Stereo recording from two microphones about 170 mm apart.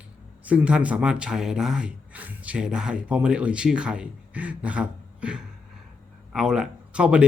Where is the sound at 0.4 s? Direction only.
5° right (ahead or behind).